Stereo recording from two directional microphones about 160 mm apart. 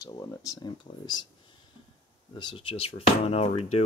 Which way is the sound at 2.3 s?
30° left (ahead or behind).